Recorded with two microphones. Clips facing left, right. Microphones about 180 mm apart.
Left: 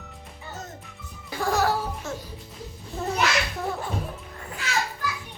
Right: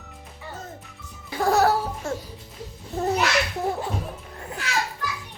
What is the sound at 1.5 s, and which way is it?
Laughter, 65° right (ahead or behind).